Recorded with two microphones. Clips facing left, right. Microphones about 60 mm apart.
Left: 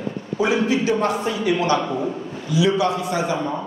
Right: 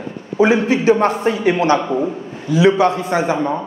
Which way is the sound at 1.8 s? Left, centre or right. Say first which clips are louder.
Right 5 dB; centre.